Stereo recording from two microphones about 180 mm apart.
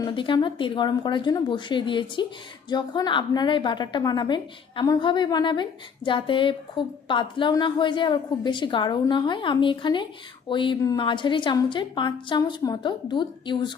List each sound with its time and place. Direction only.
0.0 s a woman's voice: 25° left (ahead or behind)